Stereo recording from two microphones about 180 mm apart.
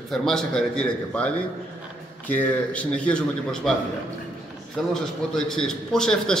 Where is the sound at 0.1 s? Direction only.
5° left (ahead or behind).